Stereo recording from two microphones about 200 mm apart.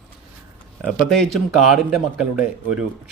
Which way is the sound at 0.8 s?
Centre (ahead or behind).